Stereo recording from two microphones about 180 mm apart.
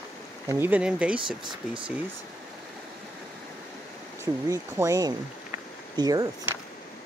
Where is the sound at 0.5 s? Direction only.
10° right (ahead or behind).